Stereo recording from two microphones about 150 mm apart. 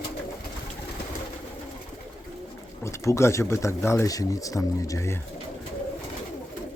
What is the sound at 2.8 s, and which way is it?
Speech, 20° left (ahead or behind).